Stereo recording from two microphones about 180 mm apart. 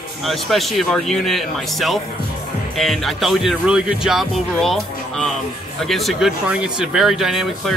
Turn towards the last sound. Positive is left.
turn(degrees=0)  # may be behind; listen again after turning